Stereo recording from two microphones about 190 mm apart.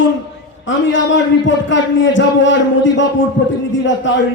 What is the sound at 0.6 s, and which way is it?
A man's voice, 75° left (ahead or behind).